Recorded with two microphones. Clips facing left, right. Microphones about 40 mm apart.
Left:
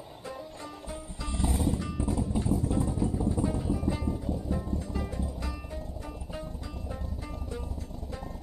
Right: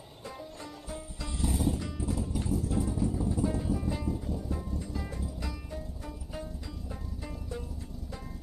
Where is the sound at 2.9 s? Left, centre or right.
Centre.